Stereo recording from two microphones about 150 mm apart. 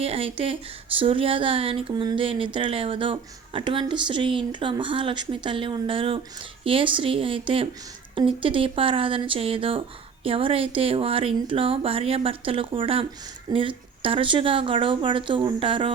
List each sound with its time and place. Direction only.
0.0 s speech: 40° right (ahead or behind)